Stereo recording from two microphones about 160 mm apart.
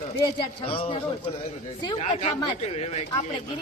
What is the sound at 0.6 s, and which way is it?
Speech, 35° left (ahead or behind).